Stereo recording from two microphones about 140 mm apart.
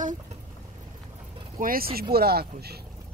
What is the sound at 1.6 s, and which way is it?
Speech, 90° right.